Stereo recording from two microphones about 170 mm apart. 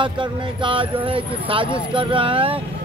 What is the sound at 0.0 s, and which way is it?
Speech, 30° right (ahead or behind).